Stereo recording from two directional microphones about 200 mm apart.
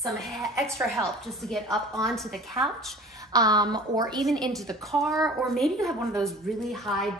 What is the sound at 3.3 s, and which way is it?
Speech, 20° right (ahead or behind).